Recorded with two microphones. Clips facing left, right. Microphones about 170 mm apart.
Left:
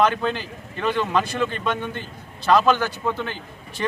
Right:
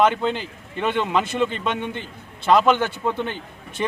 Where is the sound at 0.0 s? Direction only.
20° right (ahead or behind).